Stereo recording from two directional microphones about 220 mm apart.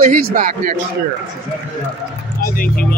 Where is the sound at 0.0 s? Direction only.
35° right (ahead or behind).